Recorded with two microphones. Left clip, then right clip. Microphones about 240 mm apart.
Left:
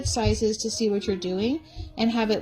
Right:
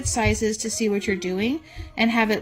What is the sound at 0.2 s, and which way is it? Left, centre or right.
Speech, right.